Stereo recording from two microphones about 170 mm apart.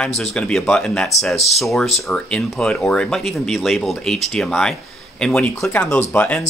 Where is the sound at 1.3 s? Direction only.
40° left (ahead or behind).